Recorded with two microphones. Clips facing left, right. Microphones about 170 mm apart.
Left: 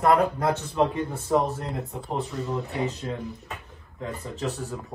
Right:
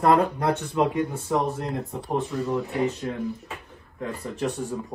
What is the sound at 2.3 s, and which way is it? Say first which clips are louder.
Speech: right 4 dB; centre (ahead or behind).